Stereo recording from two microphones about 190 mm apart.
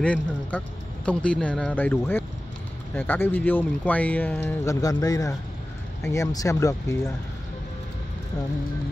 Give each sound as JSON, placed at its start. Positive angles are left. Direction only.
{"t": 0.0, "sound": "speech", "side_deg": 5}